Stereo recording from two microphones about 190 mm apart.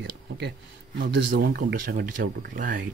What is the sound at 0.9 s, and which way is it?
Speech, 50° right (ahead or behind).